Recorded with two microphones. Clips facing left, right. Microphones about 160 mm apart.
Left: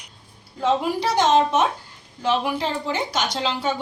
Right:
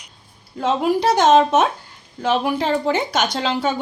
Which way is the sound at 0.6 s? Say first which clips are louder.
Right 3 dB; 55° right (ahead or behind).